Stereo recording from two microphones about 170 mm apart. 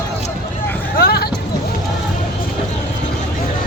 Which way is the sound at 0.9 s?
65° left (ahead or behind).